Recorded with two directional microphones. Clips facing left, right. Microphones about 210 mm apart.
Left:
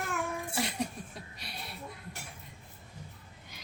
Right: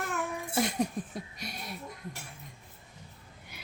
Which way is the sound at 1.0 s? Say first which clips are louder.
Right 8 dB; 45° right (ahead or behind).